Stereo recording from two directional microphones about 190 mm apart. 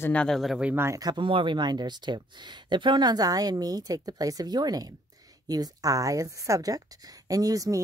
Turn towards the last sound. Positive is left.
turn(degrees=-15)  # may be behind; listen again after turning